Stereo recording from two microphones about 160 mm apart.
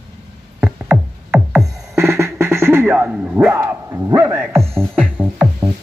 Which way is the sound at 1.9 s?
15° right (ahead or behind).